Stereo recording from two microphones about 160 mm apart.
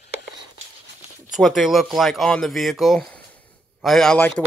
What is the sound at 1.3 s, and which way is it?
Speech, centre (ahead or behind).